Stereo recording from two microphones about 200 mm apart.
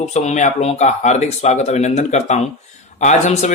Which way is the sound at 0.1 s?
35° left (ahead or behind).